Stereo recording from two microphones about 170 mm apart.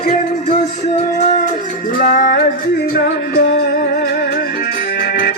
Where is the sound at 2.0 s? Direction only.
60° left (ahead or behind).